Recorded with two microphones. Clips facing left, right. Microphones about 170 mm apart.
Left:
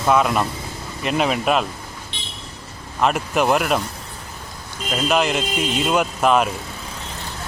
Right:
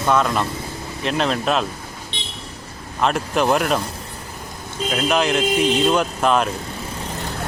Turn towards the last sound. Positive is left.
turn(degrees=5)  # may be behind; listen again after turning